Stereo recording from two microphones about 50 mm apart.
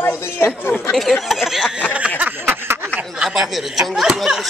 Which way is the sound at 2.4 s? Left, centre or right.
Right.